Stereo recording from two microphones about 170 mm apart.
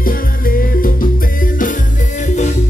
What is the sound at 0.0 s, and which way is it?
Music, 55° left (ahead or behind).